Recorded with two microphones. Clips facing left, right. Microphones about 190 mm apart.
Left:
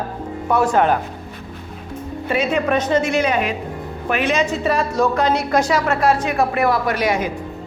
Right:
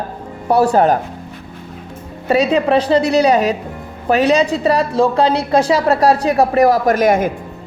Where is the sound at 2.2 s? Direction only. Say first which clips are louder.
Right 5 dB; 40° right (ahead or behind).